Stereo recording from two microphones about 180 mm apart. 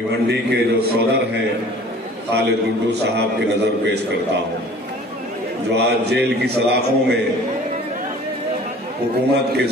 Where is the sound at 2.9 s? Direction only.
65° right (ahead or behind).